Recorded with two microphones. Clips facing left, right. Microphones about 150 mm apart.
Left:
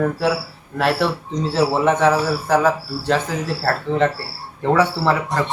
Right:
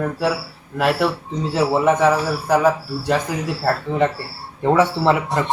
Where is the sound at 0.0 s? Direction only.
Centre (ahead or behind).